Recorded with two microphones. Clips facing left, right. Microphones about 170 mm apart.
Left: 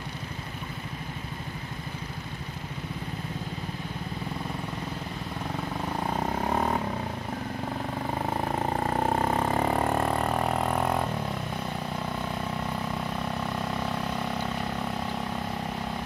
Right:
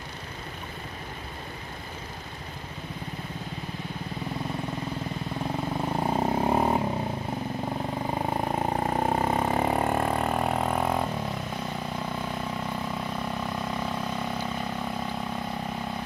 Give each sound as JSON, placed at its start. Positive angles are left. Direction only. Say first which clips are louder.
{"t": 6.1, "sound": "vehicle", "louder": "right 4 dB", "side_deg": -25}
{"t": 8.3, "sound": "vehicle", "louder": "even", "side_deg": -10}